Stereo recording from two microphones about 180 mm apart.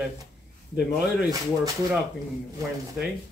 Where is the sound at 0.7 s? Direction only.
65° left (ahead or behind).